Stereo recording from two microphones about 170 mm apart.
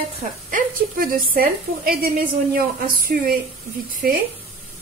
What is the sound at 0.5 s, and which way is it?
A woman's voice, 55° right (ahead or behind).